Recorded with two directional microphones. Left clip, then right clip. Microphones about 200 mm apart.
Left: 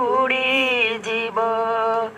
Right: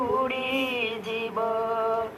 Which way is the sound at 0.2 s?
15° left (ahead or behind).